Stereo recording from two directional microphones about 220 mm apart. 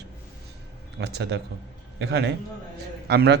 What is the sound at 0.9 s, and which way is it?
Speech, 50° right (ahead or behind).